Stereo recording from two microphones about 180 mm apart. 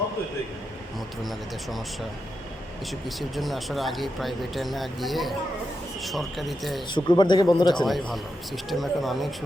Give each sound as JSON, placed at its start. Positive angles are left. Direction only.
{"t": 0.9, "sound": "speech", "side_deg": 0}
{"t": 3.2, "sound": "speech", "side_deg": 0}
{"t": 6.9, "sound": "a man's voice", "side_deg": 25}
{"t": 7.9, "sound": "speech", "side_deg": 0}